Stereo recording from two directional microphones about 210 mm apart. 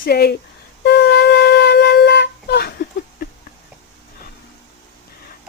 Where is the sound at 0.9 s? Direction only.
55° left (ahead or behind).